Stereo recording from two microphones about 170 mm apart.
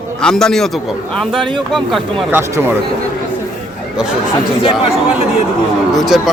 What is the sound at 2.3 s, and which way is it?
Speech, 15° right (ahead or behind).